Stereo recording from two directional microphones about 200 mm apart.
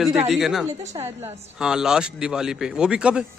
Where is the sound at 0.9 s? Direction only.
10° right (ahead or behind).